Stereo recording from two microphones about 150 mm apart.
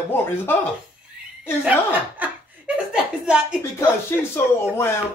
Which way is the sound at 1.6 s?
10° right (ahead or behind).